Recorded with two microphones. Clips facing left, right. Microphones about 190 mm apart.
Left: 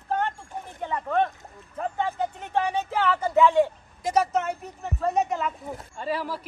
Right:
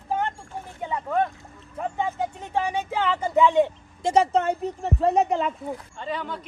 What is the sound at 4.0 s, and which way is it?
A woman's voice, 30° right (ahead or behind).